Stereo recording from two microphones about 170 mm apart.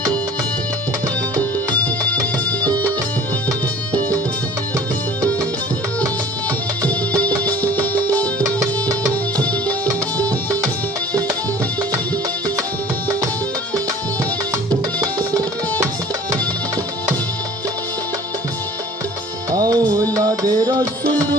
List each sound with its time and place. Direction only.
1.4 s music: 10° left (ahead or behind)
2.6 s music: 20° right (ahead or behind)
6.8 s music: 10° left (ahead or behind)
8.4 s music: 20° right (ahead or behind)
15.0 s tabla: 20° right (ahead or behind)
19.5 s music: 20° right (ahead or behind)